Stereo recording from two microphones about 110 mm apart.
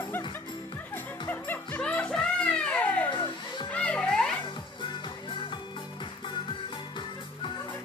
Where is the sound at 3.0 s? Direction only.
45° left (ahead or behind).